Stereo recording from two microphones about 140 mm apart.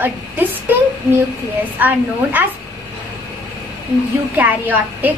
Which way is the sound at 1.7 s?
15° right (ahead or behind).